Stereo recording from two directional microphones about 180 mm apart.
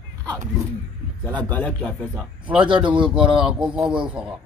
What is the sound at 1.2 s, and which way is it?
Speech, 10° left (ahead or behind).